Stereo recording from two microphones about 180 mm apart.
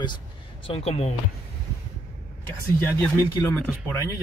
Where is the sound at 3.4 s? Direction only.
15° left (ahead or behind).